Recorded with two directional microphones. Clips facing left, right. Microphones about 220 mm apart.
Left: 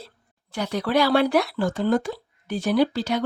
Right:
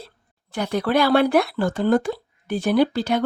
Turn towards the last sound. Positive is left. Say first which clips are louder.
# right 2 dB
turn(degrees=-55)  # may be behind; listen again after turning